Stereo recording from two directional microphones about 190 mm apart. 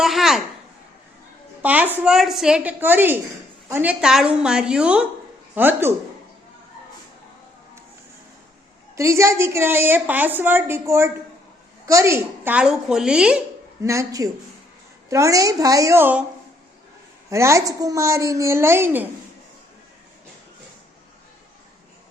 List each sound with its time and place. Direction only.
0.0 s speech: centre (ahead or behind)
1.6 s a woman's voice: 10° right (ahead or behind)
9.0 s a woman's voice: 15° right (ahead or behind)
13.8 s a woman's voice: 15° right (ahead or behind)
17.2 s a woman's voice: 15° right (ahead or behind)